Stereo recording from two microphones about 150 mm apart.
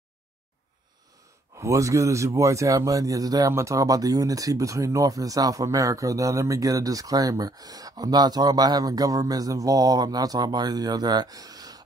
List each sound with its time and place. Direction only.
1.6 s a man's voice: 20° right (ahead or behind)